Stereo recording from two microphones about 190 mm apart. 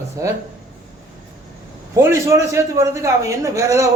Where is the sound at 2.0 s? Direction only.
15° right (ahead or behind).